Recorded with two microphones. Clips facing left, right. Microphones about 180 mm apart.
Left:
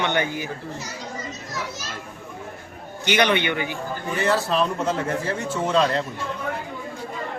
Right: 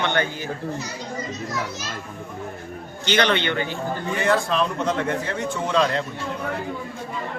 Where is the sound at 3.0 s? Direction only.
15° left (ahead or behind).